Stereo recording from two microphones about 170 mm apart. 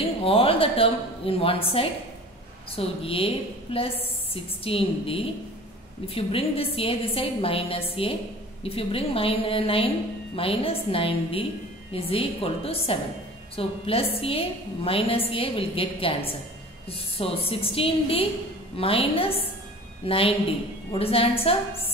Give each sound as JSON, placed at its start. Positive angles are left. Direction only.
{"t": 0.2, "sound": "a woman's voice", "side_deg": 35}
{"t": 17.5, "sound": "a woman's voice", "side_deg": 35}